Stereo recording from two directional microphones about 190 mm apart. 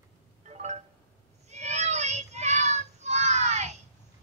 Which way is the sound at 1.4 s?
35° right (ahead or behind).